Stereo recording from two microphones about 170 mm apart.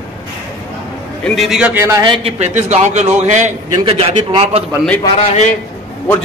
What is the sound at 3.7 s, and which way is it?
Speech, 35° right (ahead or behind).